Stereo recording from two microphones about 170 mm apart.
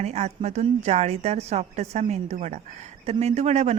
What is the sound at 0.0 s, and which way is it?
A woman's voice, 40° right (ahead or behind).